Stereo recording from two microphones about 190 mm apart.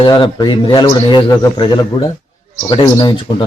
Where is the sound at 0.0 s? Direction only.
25° left (ahead or behind).